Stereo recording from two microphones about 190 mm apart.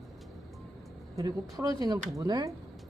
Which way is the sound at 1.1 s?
20° right (ahead or behind).